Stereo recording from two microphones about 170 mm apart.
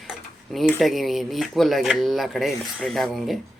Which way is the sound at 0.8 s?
Centre (ahead or behind).